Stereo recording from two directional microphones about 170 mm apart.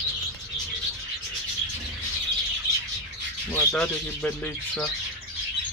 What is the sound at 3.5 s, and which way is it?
Speech, 15° left (ahead or behind).